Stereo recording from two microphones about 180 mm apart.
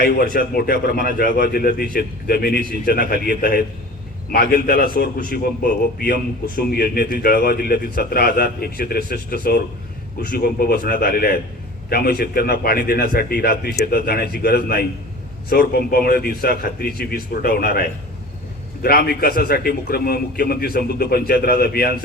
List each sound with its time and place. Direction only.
0.3 s a man's voice: 55° left (ahead or behind)